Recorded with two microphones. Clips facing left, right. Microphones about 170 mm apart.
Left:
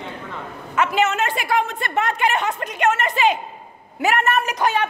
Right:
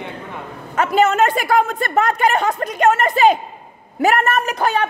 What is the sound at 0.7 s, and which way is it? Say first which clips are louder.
A woman's voice: right 4 dB; 40° right (ahead or behind).